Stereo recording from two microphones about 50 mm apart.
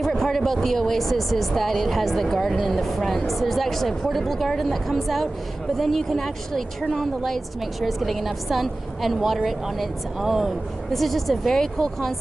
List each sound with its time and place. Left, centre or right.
0.0 s a woman's voice: centre